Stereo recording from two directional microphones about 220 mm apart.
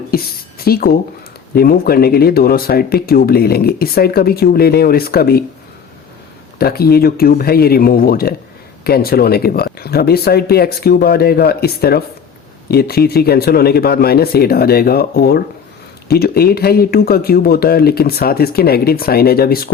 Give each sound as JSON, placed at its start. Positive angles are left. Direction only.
{"t": 0.6, "sound": "speech", "side_deg": 45}
{"t": 6.6, "sound": "speech", "side_deg": 45}